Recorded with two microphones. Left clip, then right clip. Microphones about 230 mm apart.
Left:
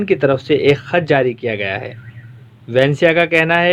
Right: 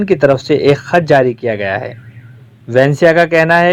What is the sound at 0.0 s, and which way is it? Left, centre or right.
Speech, centre.